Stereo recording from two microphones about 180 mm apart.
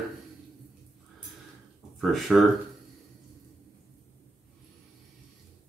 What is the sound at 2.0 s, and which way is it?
Speech, centre (ahead or behind).